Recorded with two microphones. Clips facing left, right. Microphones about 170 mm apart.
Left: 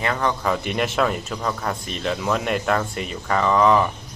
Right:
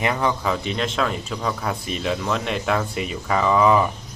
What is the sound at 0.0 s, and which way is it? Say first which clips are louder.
Speech: right 1 dB; 15° right (ahead or behind).